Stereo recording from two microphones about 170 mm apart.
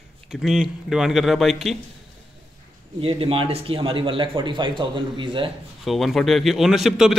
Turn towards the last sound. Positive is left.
turn(degrees=0)  # may be behind; listen again after turning